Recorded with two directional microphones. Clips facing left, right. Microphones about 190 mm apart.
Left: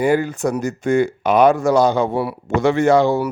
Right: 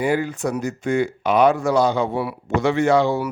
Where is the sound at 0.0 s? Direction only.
45° left (ahead or behind).